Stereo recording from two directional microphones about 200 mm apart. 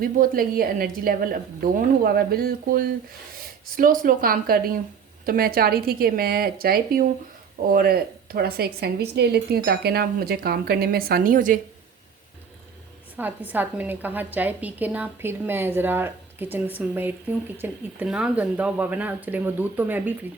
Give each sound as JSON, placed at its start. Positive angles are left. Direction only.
{"t": 0.0, "sound": "a woman's voice", "side_deg": -45}
{"t": 3.3, "sound": "a sound", "side_deg": -45}
{"t": 4.0, "sound": "a woman's voice", "side_deg": -45}
{"t": 13.1, "sound": "a woman's voice", "side_deg": -10}